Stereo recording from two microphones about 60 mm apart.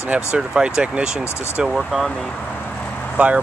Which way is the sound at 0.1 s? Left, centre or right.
Centre.